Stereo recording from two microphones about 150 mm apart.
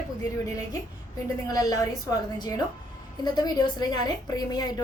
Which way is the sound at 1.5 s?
25° left (ahead or behind).